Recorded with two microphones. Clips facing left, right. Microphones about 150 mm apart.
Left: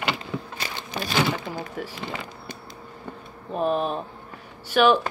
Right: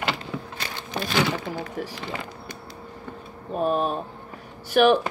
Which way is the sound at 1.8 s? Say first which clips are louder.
Right 2 dB; 40° right (ahead or behind).